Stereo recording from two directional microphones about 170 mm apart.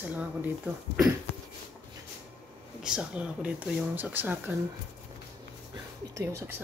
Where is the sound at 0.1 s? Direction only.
10° right (ahead or behind).